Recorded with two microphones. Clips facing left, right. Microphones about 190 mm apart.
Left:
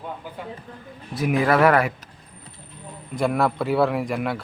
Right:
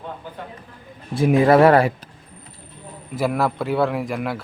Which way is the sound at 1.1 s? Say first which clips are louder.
Right 6 dB; 25° right (ahead or behind).